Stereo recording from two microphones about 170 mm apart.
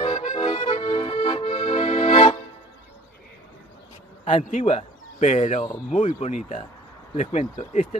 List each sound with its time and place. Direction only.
0.0 s accordion: 35° left (ahead or behind)
0.3 s accordion: 25° left (ahead or behind)
4.2 s a man's voice: 45° left (ahead or behind)